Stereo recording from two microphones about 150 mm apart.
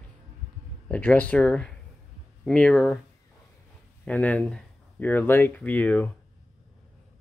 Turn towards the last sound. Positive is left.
turn(degrees=10)  # may be behind; listen again after turning